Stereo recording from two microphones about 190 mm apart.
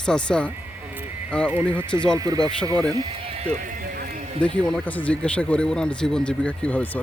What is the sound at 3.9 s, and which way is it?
Horse, 50° right (ahead or behind).